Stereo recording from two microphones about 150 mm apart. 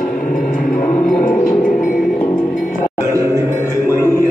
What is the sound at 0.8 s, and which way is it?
Music, 5° left (ahead or behind).